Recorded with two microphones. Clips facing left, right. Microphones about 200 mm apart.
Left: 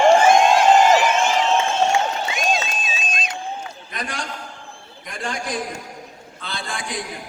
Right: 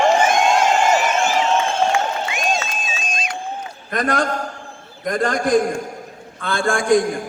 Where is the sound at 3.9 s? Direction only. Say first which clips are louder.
Right 12 dB; 50° right (ahead or behind).